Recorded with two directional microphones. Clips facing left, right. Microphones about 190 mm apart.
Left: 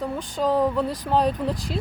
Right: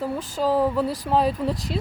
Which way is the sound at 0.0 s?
5° right (ahead or behind).